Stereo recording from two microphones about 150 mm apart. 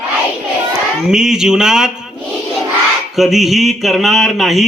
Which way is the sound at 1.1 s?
5° right (ahead or behind).